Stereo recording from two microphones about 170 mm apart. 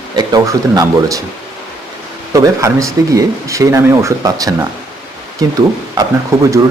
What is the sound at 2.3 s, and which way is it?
Speech, 20° right (ahead or behind).